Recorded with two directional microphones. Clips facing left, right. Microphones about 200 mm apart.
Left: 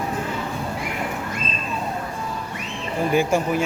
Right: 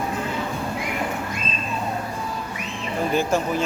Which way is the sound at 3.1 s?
10° left (ahead or behind).